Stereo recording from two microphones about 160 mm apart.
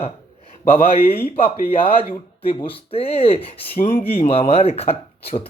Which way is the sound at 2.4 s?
35° left (ahead or behind).